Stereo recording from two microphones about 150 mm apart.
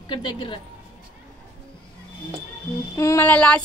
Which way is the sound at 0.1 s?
35° left (ahead or behind).